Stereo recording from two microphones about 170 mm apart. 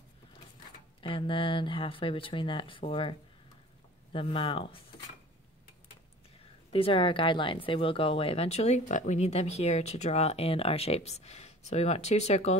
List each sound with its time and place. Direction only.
1.0 s speech: 30° left (ahead or behind)
6.7 s speech: 30° left (ahead or behind)